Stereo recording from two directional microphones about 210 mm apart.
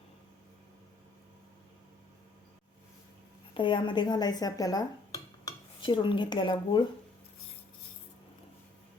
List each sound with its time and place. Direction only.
3.5 s a woman's voice: 25° left (ahead or behind)
5.5 s dishes: 20° left (ahead or behind)